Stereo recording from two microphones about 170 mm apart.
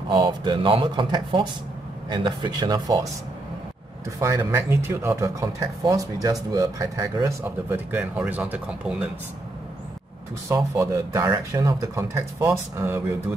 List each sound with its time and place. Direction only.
0.1 s speech: 25° right (ahead or behind)
4.2 s speech: 15° right (ahead or behind)
10.5 s speech: 20° right (ahead or behind)